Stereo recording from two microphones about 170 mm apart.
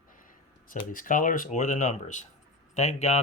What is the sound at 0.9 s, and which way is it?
Speech, 50° left (ahead or behind).